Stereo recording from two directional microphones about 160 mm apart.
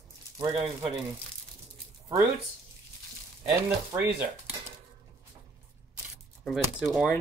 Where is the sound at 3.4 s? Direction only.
10° right (ahead or behind).